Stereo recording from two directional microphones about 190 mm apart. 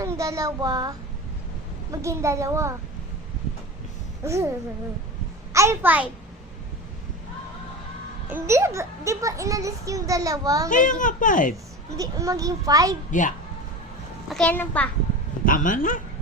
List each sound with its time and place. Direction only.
0.0 s a child's voice: 15° right (ahead or behind)
4.2 s speech: 15° right (ahead or behind)
5.5 s a child's voice: 10° right (ahead or behind)
8.3 s a child's voice: 15° right (ahead or behind)
10.7 s a woman's voice: 45° left (ahead or behind)
11.9 s a child's voice: 15° right (ahead or behind)
13.1 s a woman's voice: 40° left (ahead or behind)
14.3 s a child's voice: 5° left (ahead or behind)
15.4 s a woman's voice: 45° left (ahead or behind)